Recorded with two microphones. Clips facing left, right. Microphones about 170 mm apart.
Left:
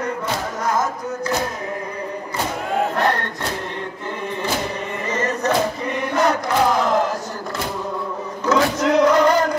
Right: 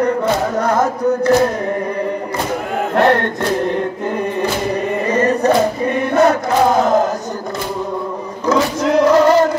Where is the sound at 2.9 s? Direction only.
60° right (ahead or behind).